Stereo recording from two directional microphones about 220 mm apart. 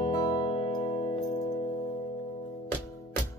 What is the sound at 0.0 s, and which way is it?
Music, 20° left (ahead or behind).